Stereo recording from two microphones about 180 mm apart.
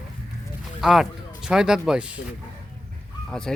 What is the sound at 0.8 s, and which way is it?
Speech, centre (ahead or behind).